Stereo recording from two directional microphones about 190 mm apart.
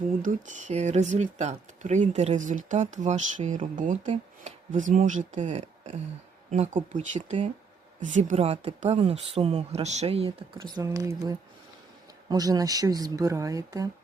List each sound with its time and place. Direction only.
0.2 s speech: 40° right (ahead or behind); by 13.8 s 15° right (ahead or behind)